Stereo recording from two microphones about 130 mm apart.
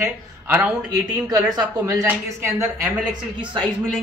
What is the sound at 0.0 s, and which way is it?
A woman's voice, 15° right (ahead or behind).